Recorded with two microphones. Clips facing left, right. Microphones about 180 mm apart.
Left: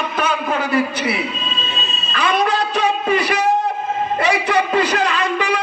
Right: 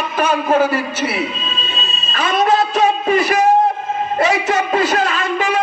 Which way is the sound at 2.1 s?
45° right (ahead or behind).